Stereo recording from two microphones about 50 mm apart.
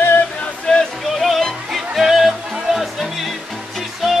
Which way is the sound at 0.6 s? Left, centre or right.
Centre.